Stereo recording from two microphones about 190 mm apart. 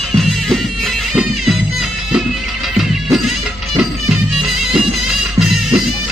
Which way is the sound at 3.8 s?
Centre (ahead or behind).